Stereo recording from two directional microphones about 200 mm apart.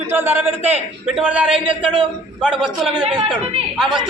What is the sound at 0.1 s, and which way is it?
A man's voice, 10° right (ahead or behind).